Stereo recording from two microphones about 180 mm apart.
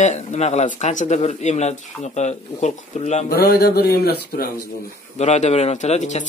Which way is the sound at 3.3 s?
60° left (ahead or behind).